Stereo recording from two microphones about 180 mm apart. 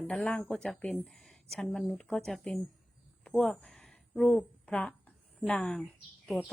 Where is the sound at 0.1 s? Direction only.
5° left (ahead or behind).